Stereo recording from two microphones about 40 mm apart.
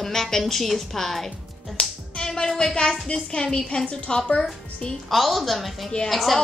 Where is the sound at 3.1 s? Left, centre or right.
Centre.